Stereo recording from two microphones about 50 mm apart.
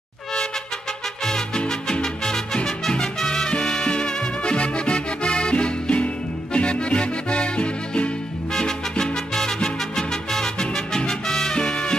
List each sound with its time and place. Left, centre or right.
1.2 s music: centre